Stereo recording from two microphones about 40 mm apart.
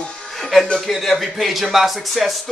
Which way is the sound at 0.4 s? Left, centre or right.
Centre.